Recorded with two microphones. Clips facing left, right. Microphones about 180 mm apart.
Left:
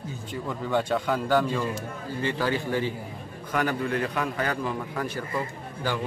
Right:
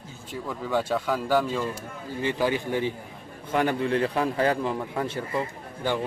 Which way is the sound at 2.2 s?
15° right (ahead or behind).